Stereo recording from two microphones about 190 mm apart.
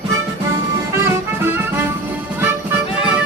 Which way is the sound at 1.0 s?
10° right (ahead or behind).